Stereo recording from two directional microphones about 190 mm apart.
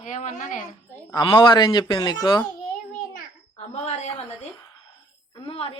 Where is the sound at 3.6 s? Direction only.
35° left (ahead or behind).